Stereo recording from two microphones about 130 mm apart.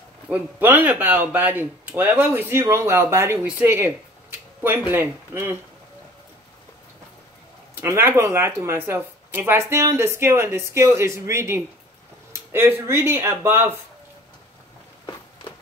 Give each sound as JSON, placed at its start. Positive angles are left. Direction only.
{"t": 0.3, "sound": "speech", "side_deg": -15}
{"t": 7.8, "sound": "speech", "side_deg": -20}